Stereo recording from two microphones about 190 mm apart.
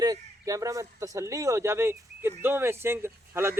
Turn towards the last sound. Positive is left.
turn(degrees=-10)  # may be behind; listen again after turning